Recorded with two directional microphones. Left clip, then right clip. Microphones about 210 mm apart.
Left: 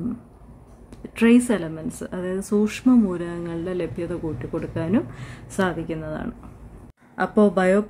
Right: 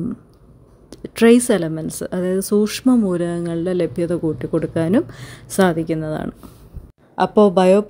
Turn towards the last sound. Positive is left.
turn(degrees=-25)  # may be behind; listen again after turning